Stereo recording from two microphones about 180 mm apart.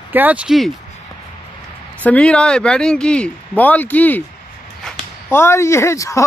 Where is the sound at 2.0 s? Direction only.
5° left (ahead or behind).